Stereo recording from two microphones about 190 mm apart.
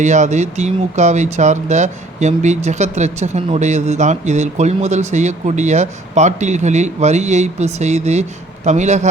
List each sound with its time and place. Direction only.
0.0 s speech: 40° right (ahead or behind)